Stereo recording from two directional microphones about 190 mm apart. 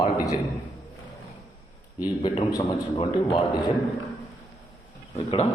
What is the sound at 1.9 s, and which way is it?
Speech, 20° left (ahead or behind).